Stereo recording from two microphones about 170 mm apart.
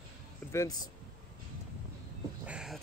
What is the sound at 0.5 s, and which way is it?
Speech, 20° left (ahead or behind).